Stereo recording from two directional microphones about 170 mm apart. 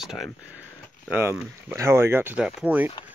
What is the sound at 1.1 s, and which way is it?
Speech, 10° right (ahead or behind).